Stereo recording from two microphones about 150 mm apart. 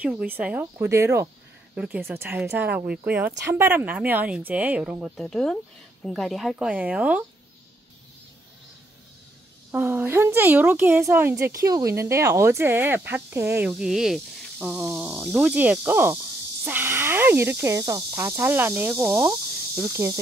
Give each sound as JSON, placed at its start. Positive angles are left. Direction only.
{"t": 0.0, "sound": "a woman's voice", "side_deg": -10}
{"t": 1.8, "sound": "a woman's voice", "side_deg": -10}
{"t": 9.7, "sound": "a woman's voice", "side_deg": -10}
{"t": 19.8, "sound": "cricket", "side_deg": -20}